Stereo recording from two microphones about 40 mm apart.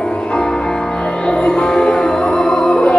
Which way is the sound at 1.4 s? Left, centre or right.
Centre.